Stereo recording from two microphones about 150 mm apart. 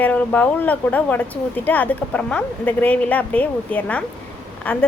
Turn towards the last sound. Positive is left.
turn(degrees=10)  # may be behind; listen again after turning